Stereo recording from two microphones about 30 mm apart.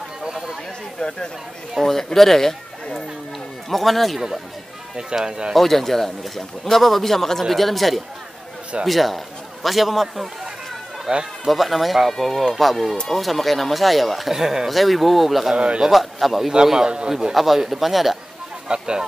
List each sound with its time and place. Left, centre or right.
0.2 s chatter: centre
0.9 s speech: left
1.8 s speech: centre
4.9 s speech: right
5.5 s speech: centre
11.1 s a man's voice: right
11.4 s speech: centre
14.3 s speech: centre
14.7 s speech: centre
15.5 s a man's voice: right
15.9 s speech: centre
16.8 s speech: right
17.3 s speech: centre
18.7 s speech: right